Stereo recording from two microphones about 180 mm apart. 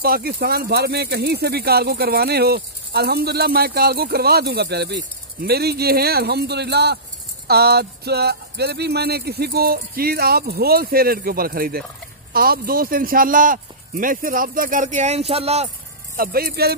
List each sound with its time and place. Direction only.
0.0 s a man's voice: 55° right (ahead or behind); by 15.7 s 35° right (ahead or behind)
16.2 s speech: 55° right (ahead or behind)